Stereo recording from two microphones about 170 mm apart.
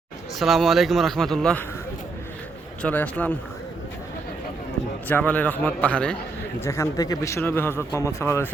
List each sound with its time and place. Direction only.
0.3 s speech: centre (ahead or behind)
2.8 s speech: 10° left (ahead or behind)
5.0 s speech: 10° left (ahead or behind)
6.7 s speech: 20° left (ahead or behind)